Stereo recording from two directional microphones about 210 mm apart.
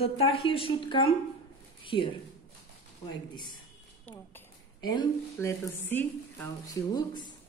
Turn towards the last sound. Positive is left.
turn(degrees=20)  # may be behind; listen again after turning